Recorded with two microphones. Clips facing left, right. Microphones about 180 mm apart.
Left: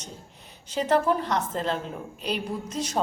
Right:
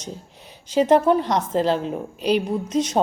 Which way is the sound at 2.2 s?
85° right.